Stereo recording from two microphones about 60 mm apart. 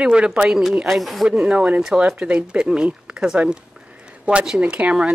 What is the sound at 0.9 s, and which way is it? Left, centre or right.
Speech, centre.